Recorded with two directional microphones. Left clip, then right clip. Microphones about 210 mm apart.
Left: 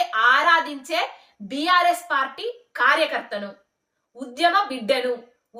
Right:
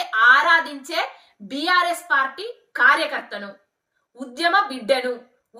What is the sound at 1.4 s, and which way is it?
Speech, 5° left (ahead or behind).